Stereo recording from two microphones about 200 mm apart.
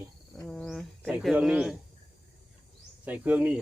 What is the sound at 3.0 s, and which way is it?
Speech, 10° right (ahead or behind).